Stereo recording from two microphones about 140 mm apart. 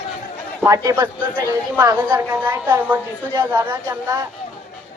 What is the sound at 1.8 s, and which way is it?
A woman's voice, 15° right (ahead or behind).